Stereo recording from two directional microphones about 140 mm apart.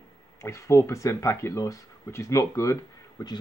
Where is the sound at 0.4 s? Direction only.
20° left (ahead or behind).